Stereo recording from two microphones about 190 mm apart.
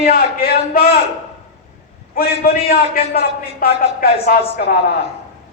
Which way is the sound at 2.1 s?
50° left (ahead or behind).